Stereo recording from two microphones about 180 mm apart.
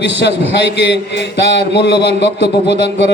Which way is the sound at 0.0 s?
75° left (ahead or behind).